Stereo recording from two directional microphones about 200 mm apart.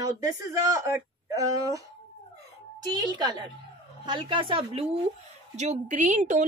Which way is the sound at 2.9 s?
20° right (ahead or behind).